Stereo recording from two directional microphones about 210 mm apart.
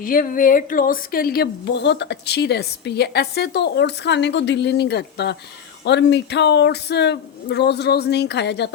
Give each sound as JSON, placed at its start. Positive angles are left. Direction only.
{"t": 0.0, "sound": "a woman's voice", "side_deg": 40}